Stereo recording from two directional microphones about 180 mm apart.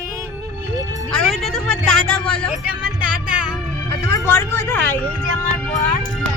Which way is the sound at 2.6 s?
5° right (ahead or behind).